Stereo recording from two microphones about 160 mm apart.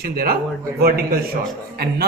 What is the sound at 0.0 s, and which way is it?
Speech, 70° right (ahead or behind).